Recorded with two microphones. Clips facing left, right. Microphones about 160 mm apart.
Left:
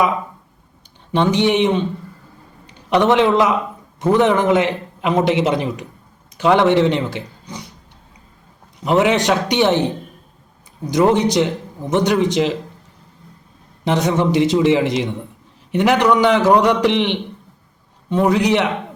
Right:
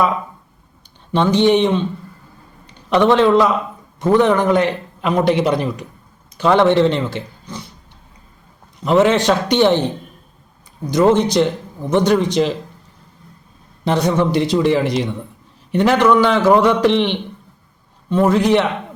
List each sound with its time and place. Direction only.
1.1 s a man's voice: 15° left (ahead or behind)
8.8 s a man's voice: 15° left (ahead or behind)
13.8 s a man's voice: 20° left (ahead or behind)